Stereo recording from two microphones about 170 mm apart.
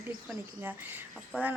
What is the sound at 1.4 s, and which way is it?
Speech, 10° right (ahead or behind).